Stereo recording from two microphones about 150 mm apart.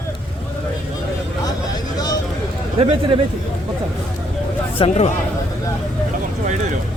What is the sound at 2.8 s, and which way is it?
Speech, 35° right (ahead or behind).